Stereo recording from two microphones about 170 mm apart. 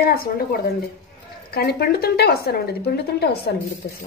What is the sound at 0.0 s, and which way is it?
Speech, 60° left (ahead or behind).